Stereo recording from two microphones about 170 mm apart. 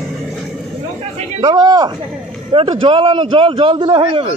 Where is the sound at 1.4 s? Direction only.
25° right (ahead or behind).